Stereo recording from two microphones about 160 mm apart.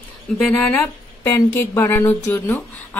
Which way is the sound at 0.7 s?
15° left (ahead or behind).